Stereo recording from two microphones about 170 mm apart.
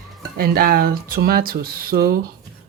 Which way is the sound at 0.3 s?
60° right (ahead or behind).